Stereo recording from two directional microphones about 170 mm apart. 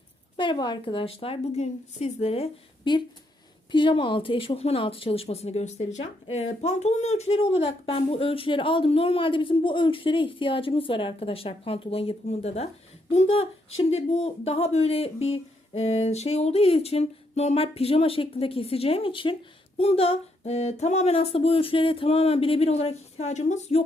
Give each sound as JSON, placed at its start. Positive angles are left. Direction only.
{"t": 0.3, "sound": "speech", "side_deg": 25}